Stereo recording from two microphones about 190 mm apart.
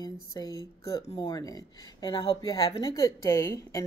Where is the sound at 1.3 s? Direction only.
20° left (ahead or behind).